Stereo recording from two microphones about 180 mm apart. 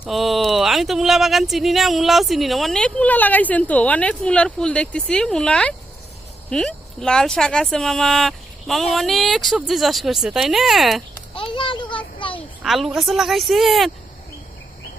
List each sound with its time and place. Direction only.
0.0 s speech: centre (ahead or behind)
11.3 s children playing: 30° left (ahead or behind)
12.6 s speech: centre (ahead or behind)